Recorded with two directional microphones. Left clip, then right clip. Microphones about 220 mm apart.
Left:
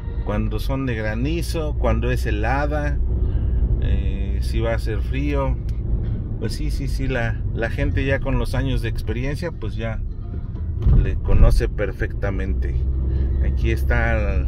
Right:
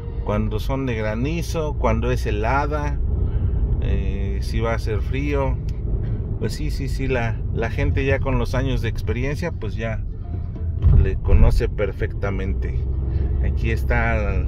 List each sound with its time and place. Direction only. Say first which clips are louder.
0.3 s speech: right 2 dB; 25° right (ahead or behind)
7.0 s speech: right 1 dB; 20° right (ahead or behind)
11.0 s speech: right 1 dB; 20° right (ahead or behind)